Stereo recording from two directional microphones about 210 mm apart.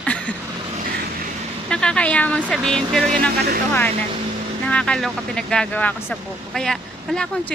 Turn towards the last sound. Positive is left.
turn(degrees=5)  # may be behind; listen again after turning